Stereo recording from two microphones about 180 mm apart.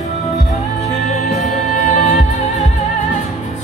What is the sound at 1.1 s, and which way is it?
Music, 40° left (ahead or behind).